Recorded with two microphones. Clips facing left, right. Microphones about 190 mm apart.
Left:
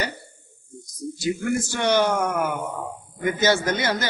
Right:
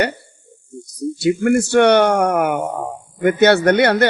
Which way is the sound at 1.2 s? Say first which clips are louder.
Right 9 dB; 65° right (ahead or behind).